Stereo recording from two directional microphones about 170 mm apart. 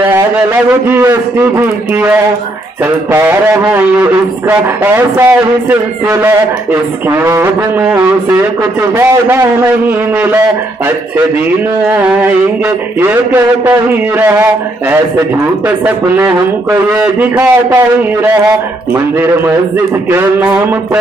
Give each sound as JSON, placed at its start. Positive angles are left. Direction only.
{"t": 0.8, "sound": "a man's voice", "side_deg": -10}
{"t": 3.1, "sound": "a man's voice", "side_deg": -15}
{"t": 8.9, "sound": "a man's voice", "side_deg": -15}
{"t": 11.9, "sound": "a man's voice", "side_deg": -10}
{"t": 17.0, "sound": "a man's voice", "side_deg": -10}